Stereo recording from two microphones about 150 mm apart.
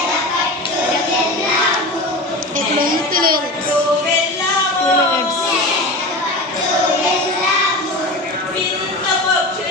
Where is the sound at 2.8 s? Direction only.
75° right (ahead or behind).